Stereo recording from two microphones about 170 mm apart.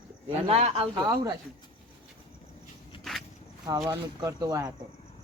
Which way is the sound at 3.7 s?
20° right (ahead or behind).